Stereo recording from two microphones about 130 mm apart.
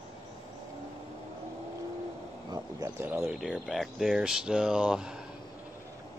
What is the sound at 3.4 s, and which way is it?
Speech, centre (ahead or behind).